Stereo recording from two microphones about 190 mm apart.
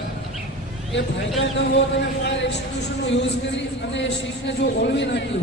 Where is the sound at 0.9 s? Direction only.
70° left (ahead or behind).